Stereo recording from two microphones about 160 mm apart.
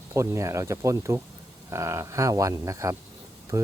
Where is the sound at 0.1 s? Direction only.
20° right (ahead or behind).